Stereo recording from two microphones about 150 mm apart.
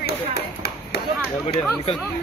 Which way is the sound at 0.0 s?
90° left.